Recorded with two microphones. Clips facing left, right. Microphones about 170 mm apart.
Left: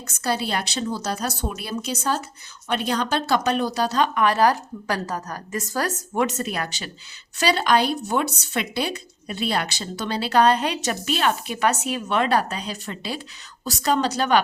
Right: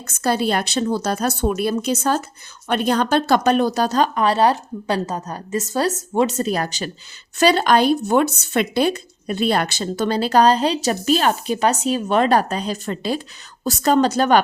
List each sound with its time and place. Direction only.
0.2 s speech: 50° right (ahead or behind)